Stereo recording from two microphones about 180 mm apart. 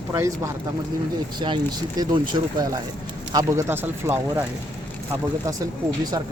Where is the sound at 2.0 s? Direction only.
25° right (ahead or behind).